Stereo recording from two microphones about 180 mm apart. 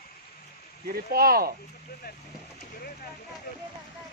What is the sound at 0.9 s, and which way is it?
Speech, 55° right (ahead or behind).